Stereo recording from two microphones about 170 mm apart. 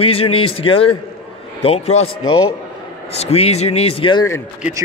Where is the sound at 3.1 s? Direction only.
35° left (ahead or behind).